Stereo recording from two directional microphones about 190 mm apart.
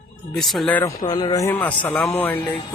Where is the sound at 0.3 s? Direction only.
Centre (ahead or behind).